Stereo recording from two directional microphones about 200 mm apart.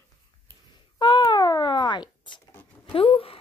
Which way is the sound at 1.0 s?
20° left (ahead or behind).